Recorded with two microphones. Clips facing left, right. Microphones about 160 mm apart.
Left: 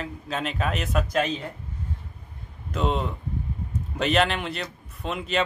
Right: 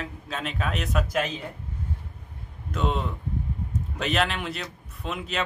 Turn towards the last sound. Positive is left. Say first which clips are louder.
# left 3 dB
turn(degrees=0)  # may be behind; listen again after turning